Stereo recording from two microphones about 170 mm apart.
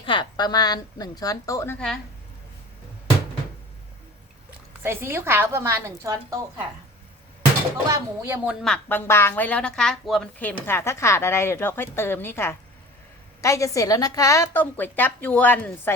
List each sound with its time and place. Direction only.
0.0 s a woman's voice: 30° left (ahead or behind); by 2.0 s 10° left (ahead or behind)
4.8 s a woman's voice: 15° right (ahead or behind)
7.9 s a woman's voice: 15° right (ahead or behind)
8.6 s a woman's voice: 10° left (ahead or behind)
10.7 s a woman's voice: 15° left (ahead or behind)